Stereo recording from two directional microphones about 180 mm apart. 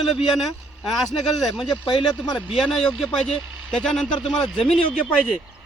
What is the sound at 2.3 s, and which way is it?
Speech, centre (ahead or behind).